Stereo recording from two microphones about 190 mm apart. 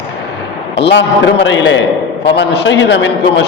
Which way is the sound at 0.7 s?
65° left (ahead or behind).